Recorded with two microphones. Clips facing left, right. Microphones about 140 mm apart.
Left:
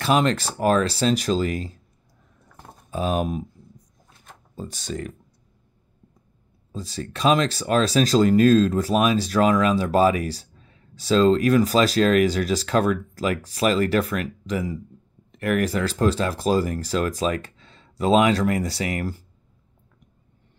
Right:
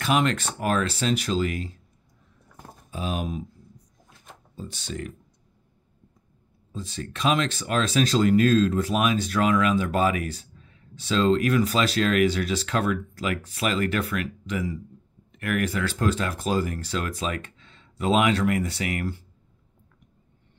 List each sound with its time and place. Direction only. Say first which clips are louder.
0.0 s speech: left 3 dB; 35° left (ahead or behind)
2.9 s speech: left 6 dB; 45° left (ahead or behind)
4.6 s speech: left 3 dB; 45° left (ahead or behind)
6.7 s speech: left 3 dB; 40° left (ahead or behind)